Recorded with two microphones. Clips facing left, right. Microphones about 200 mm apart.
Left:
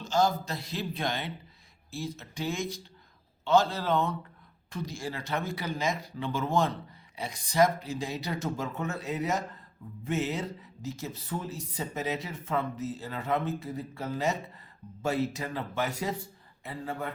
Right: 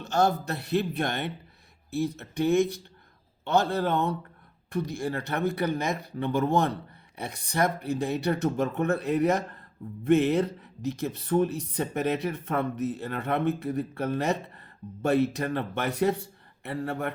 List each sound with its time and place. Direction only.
0.0 s speech: 65° right (ahead or behind)